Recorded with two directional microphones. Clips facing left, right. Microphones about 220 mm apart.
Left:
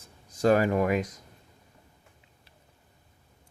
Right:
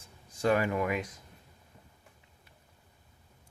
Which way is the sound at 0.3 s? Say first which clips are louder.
Left 5 dB; 40° left (ahead or behind).